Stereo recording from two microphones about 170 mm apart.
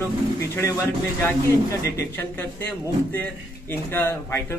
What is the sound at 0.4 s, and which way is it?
A man's voice, 15° left (ahead or behind).